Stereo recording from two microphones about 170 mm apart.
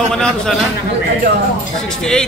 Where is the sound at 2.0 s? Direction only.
5° left (ahead or behind).